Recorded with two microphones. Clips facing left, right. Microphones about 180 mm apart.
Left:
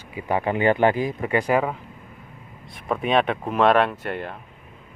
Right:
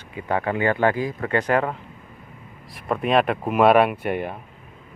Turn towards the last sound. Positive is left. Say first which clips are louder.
# right 4 dB
turn(degrees=-15)  # may be behind; listen again after turning